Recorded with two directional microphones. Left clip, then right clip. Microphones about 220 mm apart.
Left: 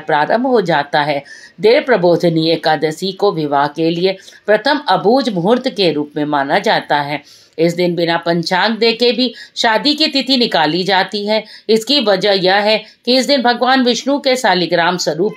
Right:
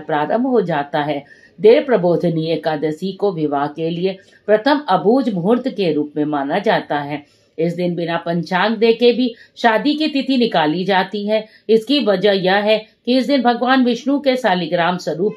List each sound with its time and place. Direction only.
0.0 s speech: 35° left (ahead or behind)